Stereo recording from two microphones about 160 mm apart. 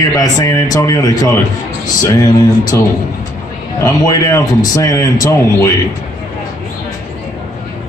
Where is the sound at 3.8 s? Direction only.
20° left (ahead or behind).